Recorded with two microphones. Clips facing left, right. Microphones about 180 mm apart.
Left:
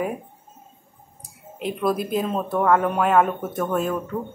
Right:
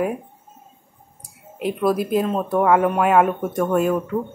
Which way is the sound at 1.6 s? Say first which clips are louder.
Right 3 dB; 5° right (ahead or behind).